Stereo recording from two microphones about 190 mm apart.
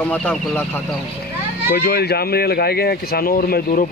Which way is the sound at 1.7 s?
55° left (ahead or behind).